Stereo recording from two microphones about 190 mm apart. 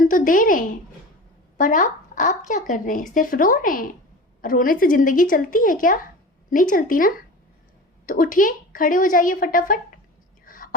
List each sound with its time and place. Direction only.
0.1 s a woman's voice: 45° left (ahead or behind)
10.4 s whispering: 45° left (ahead or behind)